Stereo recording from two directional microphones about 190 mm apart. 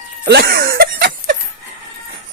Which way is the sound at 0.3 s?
60° right (ahead or behind).